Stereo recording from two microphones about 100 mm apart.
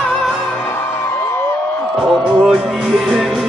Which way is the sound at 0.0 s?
5° left (ahead or behind).